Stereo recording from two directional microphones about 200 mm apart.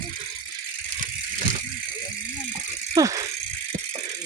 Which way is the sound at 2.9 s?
15° right (ahead or behind).